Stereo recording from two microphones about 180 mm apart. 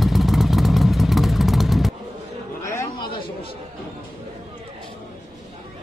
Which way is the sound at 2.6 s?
15° left (ahead or behind).